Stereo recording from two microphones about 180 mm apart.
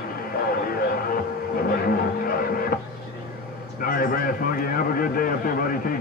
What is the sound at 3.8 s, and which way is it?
A man's voice, 55° left (ahead or behind).